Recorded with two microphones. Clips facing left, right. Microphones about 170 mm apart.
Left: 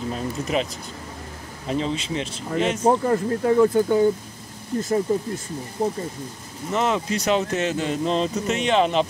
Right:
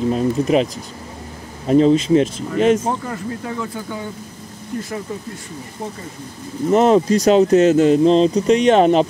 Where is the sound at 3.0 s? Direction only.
45° left (ahead or behind).